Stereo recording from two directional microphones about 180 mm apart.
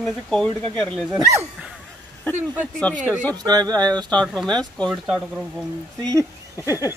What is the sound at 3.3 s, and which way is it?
Speech, 20° right (ahead or behind).